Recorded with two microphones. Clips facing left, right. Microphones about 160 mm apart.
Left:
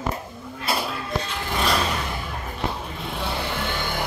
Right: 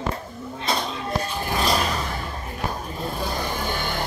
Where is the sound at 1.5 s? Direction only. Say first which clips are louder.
Even; 35° right (ahead or behind).